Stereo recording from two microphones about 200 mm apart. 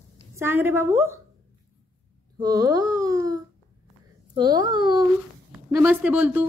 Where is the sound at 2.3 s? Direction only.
20° right (ahead or behind).